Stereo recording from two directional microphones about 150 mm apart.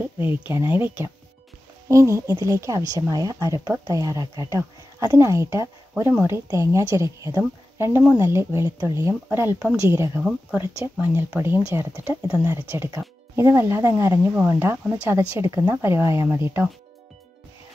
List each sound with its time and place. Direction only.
0.0 s speech: 10° right (ahead or behind)